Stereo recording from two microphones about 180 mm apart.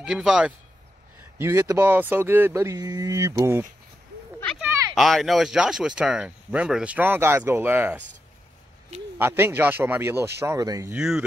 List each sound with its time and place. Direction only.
0.0 s speech: 5° right (ahead or behind)
1.4 s speech: 15° right (ahead or behind)
4.9 s speech: centre (ahead or behind)
9.2 s speech: 10° right (ahead or behind)
11.0 s speech: 5° right (ahead or behind)